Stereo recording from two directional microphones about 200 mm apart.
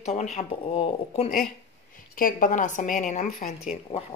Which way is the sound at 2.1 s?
45° left (ahead or behind).